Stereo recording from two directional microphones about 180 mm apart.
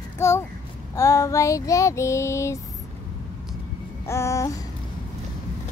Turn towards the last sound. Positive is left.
turn(degrees=15)  # may be behind; listen again after turning